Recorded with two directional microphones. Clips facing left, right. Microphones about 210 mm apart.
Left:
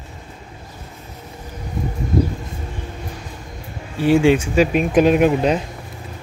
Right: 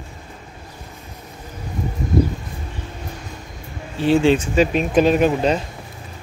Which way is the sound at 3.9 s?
10° left (ahead or behind).